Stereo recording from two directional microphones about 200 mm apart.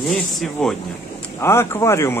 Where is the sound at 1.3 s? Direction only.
15° left (ahead or behind).